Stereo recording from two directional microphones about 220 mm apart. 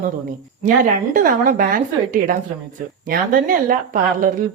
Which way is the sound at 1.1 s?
40° right (ahead or behind).